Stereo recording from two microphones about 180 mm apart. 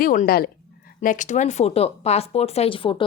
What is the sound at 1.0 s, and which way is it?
A woman's voice, 45° left (ahead or behind).